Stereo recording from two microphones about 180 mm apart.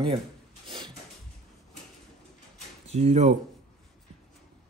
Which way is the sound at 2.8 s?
40° right (ahead or behind).